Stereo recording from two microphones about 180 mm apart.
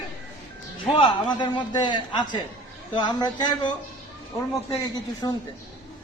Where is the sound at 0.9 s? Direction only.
25° left (ahead or behind).